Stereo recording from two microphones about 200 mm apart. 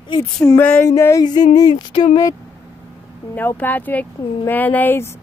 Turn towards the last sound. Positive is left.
turn(degrees=10)  # may be behind; listen again after turning